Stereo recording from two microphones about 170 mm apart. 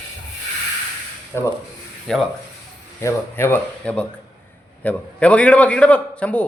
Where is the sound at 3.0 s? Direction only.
15° left (ahead or behind).